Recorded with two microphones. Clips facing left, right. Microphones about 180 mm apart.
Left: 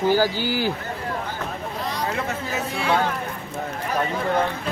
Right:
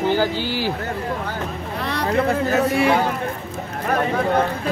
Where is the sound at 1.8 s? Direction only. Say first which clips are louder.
Right 8 dB; 65° right (ahead or behind).